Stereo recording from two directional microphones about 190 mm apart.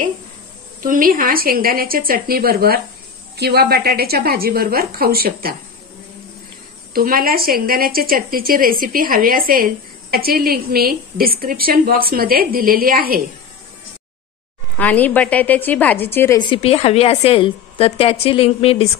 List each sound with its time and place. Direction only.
0.8 s a woman's voice: 45° right (ahead or behind)
6.9 s a woman's voice: 50° right (ahead or behind)
14.8 s a woman's voice: 10° left (ahead or behind)
16.3 s a woman's voice: 25° left (ahead or behind)